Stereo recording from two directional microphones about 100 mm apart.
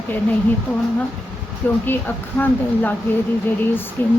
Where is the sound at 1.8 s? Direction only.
20° left (ahead or behind).